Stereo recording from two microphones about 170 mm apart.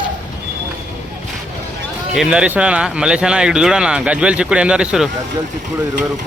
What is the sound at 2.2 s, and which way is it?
Speech, 5° right (ahead or behind).